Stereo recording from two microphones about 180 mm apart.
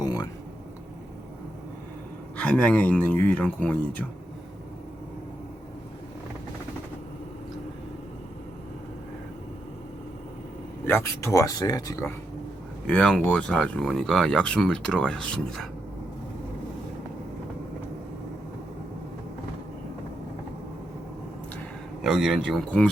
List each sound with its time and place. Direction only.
0.0 s a sound: 20° left (ahead or behind)
2.4 s speech: 5° left (ahead or behind)
10.8 s speech: 15° left (ahead or behind)
12.9 s speech: 5° left (ahead or behind)
22.0 s speech: centre (ahead or behind)